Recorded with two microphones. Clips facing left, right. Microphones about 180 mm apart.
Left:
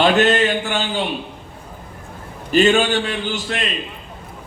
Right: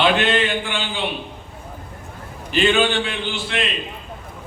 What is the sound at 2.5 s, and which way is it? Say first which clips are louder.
Mantra: left 3 dB; 45° left (ahead or behind).